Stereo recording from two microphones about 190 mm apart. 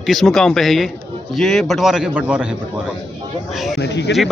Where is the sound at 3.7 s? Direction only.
65° left (ahead or behind).